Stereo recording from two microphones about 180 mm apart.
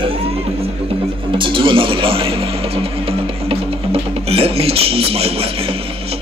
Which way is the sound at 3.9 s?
30° right (ahead or behind).